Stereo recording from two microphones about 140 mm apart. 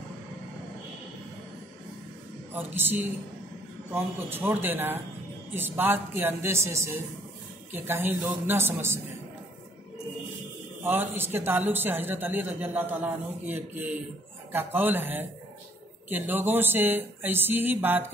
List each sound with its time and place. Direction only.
2.5 s a man's voice: 15° right (ahead or behind)
10.8 s a man's voice: 15° right (ahead or behind)